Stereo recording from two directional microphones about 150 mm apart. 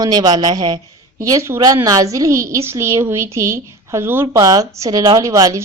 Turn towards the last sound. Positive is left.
turn(degrees=-20)  # may be behind; listen again after turning